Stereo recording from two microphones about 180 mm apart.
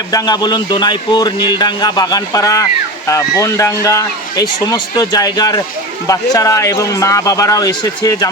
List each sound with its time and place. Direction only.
0.1 s speech: 20° left (ahead or behind)